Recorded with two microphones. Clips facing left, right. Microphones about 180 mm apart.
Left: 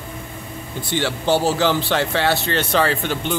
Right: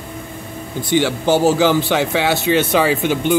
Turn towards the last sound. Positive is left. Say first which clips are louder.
# right 5 dB
turn(degrees=-10)  # may be behind; listen again after turning